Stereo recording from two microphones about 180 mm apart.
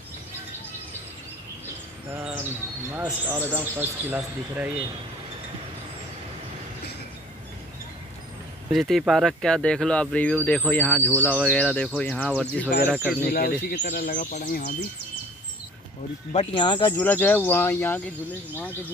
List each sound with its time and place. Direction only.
2.0 s speech: 10° right (ahead or behind)
8.7 s speech: centre (ahead or behind)
12.9 s speech: 5° right (ahead or behind)
13.3 s speech: 60° left (ahead or behind)
16.5 s speech: 25° left (ahead or behind)
16.9 s speech: 10° left (ahead or behind)